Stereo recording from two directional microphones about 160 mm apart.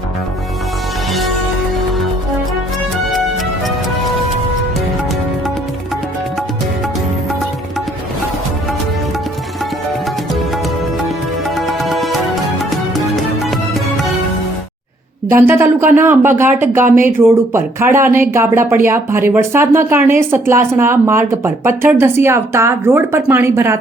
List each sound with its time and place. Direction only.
11.4 s music: centre (ahead or behind)
15.3 s speech: 15° right (ahead or behind)